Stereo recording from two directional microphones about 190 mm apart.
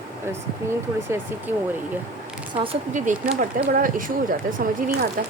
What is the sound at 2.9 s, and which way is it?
Speech, 40° right (ahead or behind).